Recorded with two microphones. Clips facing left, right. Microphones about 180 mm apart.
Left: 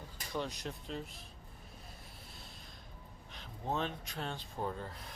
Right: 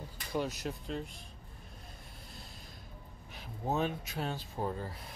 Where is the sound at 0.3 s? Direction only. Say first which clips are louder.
Right 4 dB; 5° right (ahead or behind).